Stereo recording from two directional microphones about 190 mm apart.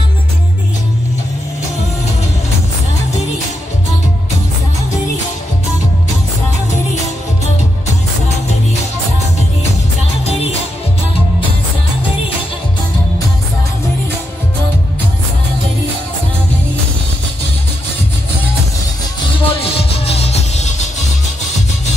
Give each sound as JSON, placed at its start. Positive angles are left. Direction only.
{"t": 19.2, "sound": "music", "side_deg": 30}